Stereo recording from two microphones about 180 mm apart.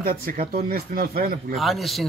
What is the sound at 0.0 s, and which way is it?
Speech, 55° right (ahead or behind).